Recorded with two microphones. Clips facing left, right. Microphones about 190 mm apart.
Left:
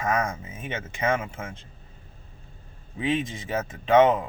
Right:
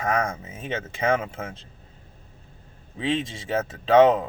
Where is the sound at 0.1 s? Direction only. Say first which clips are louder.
Right 2 dB; 30° right (ahead or behind).